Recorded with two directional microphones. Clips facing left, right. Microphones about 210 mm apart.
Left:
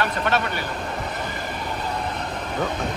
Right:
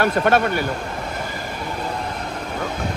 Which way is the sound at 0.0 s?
50° right (ahead or behind).